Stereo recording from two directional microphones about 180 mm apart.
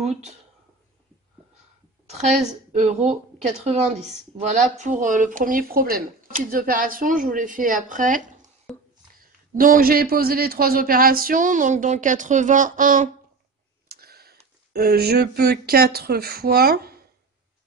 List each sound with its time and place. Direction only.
0.0 s speech: 40° right (ahead or behind)
2.0 s a woman's voice: 40° right (ahead or behind)
8.7 s a sound: centre (ahead or behind)
9.2 s a man's voice: 50° right (ahead or behind)
13.8 s speech: 60° right (ahead or behind)